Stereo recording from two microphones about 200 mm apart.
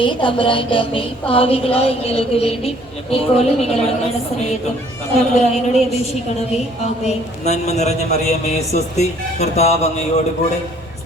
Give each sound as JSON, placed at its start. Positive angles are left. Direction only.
{"t": 0.0, "sound": "music", "side_deg": 25}
{"t": 3.4, "sound": "speech", "side_deg": 30}